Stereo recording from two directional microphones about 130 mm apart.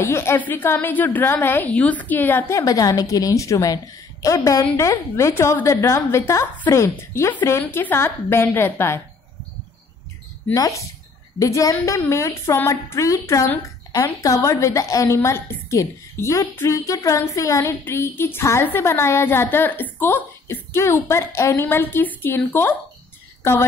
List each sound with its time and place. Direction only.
0.0 s a woman's voice: 20° left (ahead or behind)
10.5 s a woman's voice: 25° left (ahead or behind)